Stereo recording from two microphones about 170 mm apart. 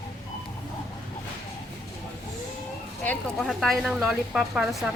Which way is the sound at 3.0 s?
10° left (ahead or behind).